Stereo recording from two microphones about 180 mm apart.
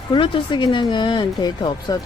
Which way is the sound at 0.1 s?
25° left (ahead or behind).